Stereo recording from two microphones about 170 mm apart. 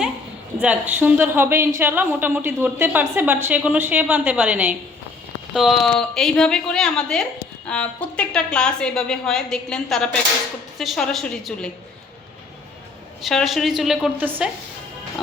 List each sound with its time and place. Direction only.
0.6 s a woman's voice: 10° right (ahead or behind)
13.2 s a woman's voice: centre (ahead or behind)